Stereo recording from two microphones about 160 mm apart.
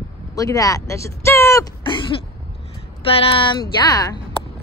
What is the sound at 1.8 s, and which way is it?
Throat clearing, 30° left (ahead or behind).